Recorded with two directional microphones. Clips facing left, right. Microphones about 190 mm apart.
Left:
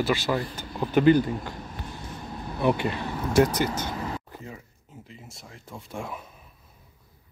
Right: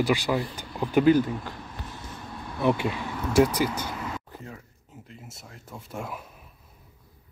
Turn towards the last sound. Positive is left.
turn(degrees=-5)  # may be behind; listen again after turning